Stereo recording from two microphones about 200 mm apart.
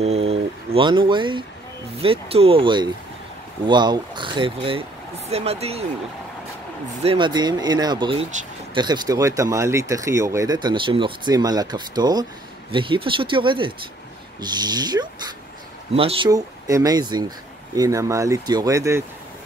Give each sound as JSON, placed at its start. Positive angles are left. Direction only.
{"t": 0.0, "sound": "a sound", "side_deg": -30}
{"t": 2.0, "sound": "speech", "side_deg": -30}
{"t": 7.0, "sound": "speech", "side_deg": -25}